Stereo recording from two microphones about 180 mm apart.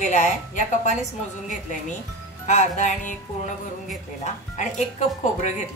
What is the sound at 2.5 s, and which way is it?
Speech, 40° left (ahead or behind).